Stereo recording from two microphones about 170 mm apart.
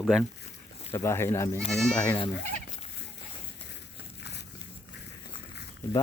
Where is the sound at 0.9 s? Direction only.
15° left (ahead or behind).